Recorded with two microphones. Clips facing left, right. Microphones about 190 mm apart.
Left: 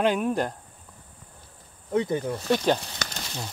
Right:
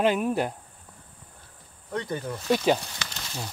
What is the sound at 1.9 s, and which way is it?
Speech, 20° left (ahead or behind).